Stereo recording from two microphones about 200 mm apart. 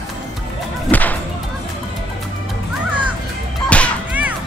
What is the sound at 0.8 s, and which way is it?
Whip, 10° left (ahead or behind).